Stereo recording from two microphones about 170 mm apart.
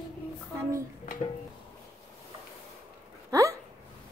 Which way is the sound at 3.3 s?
20° right (ahead or behind).